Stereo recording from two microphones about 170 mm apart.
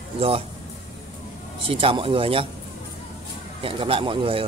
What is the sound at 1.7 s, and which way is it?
Speech, 30° right (ahead or behind).